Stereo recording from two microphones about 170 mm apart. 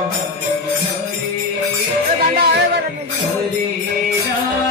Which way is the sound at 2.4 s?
70° right (ahead or behind).